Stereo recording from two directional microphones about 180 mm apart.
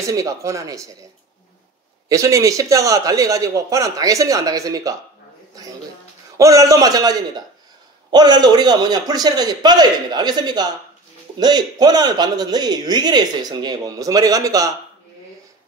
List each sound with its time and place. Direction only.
0.0 s speech: 20° right (ahead or behind)
2.0 s speech: 20° right (ahead or behind)